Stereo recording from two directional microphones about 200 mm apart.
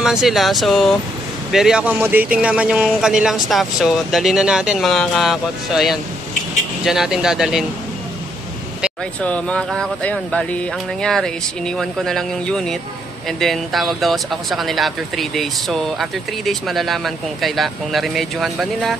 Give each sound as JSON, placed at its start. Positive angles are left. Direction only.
{"t": 0.0, "sound": "speech", "side_deg": 0}
{"t": 9.2, "sound": "speech", "side_deg": 5}